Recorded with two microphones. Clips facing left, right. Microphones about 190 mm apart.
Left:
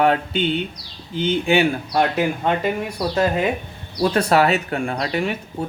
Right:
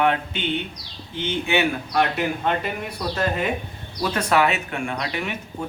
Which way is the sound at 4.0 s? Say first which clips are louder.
Left 4 dB; 35° left (ahead or behind).